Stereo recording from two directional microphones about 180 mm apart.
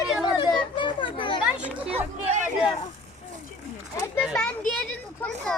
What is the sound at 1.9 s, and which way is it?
Speech, 40° right (ahead or behind).